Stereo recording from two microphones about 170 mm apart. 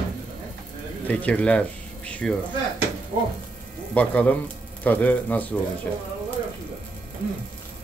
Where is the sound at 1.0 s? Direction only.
10° left (ahead or behind).